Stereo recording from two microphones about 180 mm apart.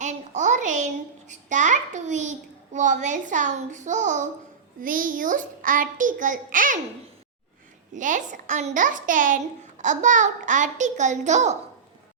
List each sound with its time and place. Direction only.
0.0 s a sound: 40° right (ahead or behind)
2.7 s a child's voice: 40° right (ahead or behind)
7.9 s a child's voice: 45° right (ahead or behind)